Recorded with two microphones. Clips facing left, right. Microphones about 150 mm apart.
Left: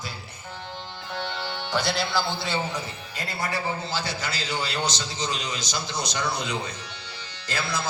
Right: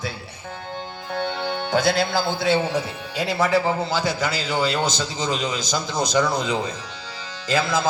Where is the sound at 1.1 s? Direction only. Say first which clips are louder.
Right 6 dB; 55° right (ahead or behind).